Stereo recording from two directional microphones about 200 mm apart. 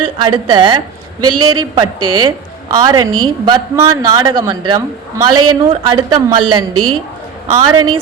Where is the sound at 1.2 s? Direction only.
90° right.